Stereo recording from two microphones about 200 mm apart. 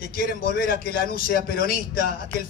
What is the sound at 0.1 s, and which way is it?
A man's voice, 50° left (ahead or behind).